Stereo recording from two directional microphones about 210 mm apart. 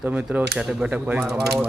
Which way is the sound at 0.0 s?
5° right (ahead or behind).